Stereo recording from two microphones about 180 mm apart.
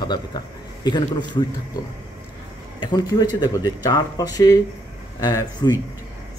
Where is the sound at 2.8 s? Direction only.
25° left (ahead or behind).